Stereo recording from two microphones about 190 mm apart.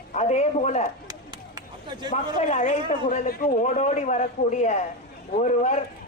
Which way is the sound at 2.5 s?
40° left (ahead or behind).